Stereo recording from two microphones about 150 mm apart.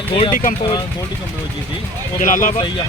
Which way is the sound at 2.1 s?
60° left (ahead or behind).